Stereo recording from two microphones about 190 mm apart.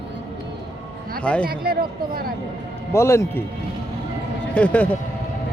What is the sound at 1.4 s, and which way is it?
Speech, 55° right (ahead or behind).